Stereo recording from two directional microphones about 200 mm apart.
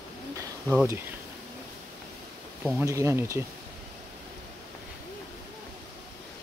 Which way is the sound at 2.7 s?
15° right (ahead or behind).